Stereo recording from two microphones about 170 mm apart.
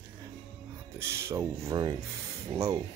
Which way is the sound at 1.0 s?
15° right (ahead or behind).